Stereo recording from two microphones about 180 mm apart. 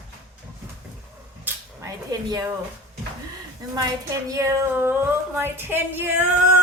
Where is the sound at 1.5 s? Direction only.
20° right (ahead or behind).